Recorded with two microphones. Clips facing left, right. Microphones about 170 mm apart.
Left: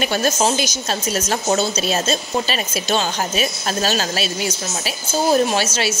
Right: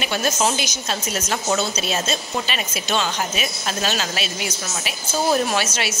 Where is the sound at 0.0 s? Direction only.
40° left (ahead or behind).